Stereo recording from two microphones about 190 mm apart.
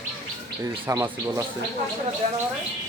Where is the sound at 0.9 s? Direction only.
15° right (ahead or behind).